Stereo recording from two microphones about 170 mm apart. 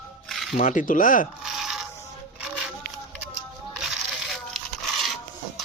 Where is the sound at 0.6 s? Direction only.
50° left (ahead or behind).